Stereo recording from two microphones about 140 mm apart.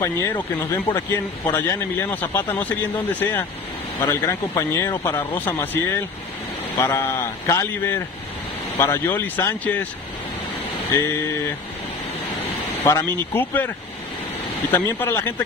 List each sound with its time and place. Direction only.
0.0 s speech: 20° left (ahead or behind)
10.9 s speech: 20° left (ahead or behind)
12.8 s speech: 20° left (ahead or behind)
14.7 s speech: 15° left (ahead or behind)